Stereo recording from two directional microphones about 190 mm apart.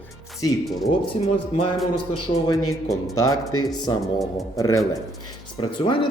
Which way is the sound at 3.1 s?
20° left (ahead or behind).